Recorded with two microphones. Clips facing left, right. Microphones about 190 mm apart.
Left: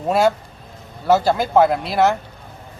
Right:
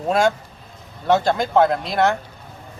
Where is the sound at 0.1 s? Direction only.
5° left (ahead or behind).